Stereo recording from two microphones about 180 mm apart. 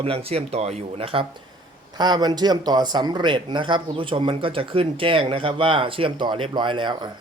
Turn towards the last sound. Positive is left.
turn(degrees=-25)  # may be behind; listen again after turning